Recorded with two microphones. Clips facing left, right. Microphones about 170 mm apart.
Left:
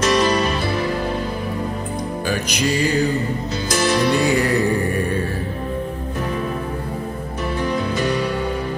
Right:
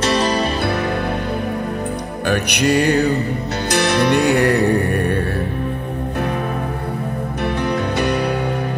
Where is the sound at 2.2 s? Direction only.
65° right (ahead or behind).